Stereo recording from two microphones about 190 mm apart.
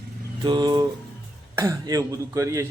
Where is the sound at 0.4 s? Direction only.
20° right (ahead or behind).